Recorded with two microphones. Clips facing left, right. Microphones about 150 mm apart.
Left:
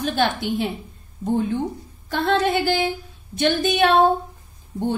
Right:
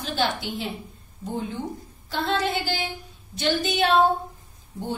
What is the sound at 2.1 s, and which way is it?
A woman's voice, 55° left (ahead or behind).